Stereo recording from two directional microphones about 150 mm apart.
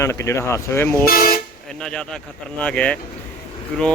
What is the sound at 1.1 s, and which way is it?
Speech, 75° left (ahead or behind).